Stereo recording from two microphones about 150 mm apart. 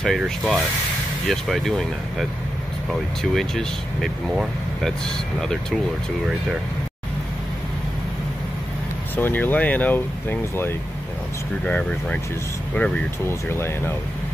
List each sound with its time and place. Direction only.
0.0 s speech: centre (ahead or behind)
9.1 s speech: 10° left (ahead or behind)
11.6 s speech: 10° left (ahead or behind)